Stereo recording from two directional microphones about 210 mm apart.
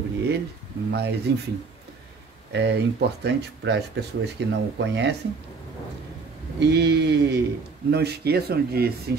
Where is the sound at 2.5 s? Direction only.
55° right (ahead or behind).